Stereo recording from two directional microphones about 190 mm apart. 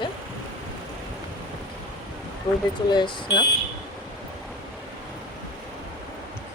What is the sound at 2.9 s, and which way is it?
Speech, 25° left (ahead or behind).